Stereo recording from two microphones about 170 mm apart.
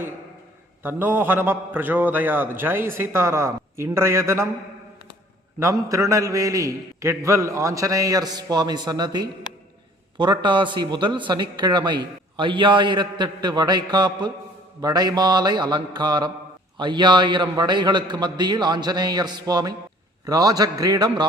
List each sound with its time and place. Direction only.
0.8 s a man's voice: 10° right (ahead or behind)
5.5 s a man's voice: 20° right (ahead or behind)